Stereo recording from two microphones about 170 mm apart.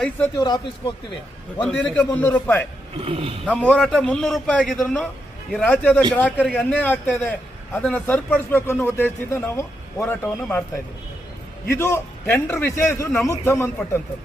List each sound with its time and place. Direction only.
0.3 s speech: 25° left (ahead or behind)
1.6 s a man's voice: 5° left (ahead or behind)
3.0 s speech: 35° right (ahead or behind)
3.4 s a man's voice: 10° left (ahead or behind)
11.7 s a man's voice: 15° left (ahead or behind)